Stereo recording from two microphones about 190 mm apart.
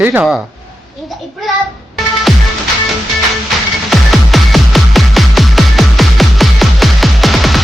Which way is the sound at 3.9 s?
Centre (ahead or behind).